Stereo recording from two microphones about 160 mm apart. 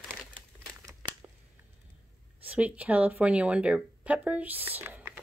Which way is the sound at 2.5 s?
10° right (ahead or behind).